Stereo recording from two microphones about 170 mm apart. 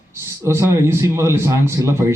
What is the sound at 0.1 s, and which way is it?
A man's voice, 15° right (ahead or behind).